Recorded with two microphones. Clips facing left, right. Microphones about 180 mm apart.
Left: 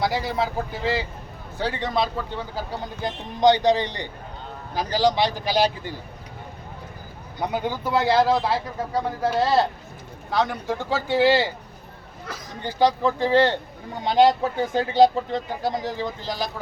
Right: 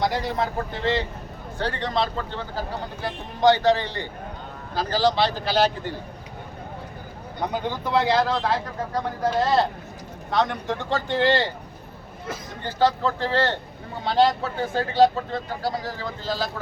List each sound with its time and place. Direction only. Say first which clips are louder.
0.0 s a man's voice: even; 5° left (ahead or behind)
7.3 s a man's voice: left 1 dB; 10° left (ahead or behind)
10.3 s speech: even; centre (ahead or behind)
12.6 s a man's voice: left 1 dB; 15° left (ahead or behind)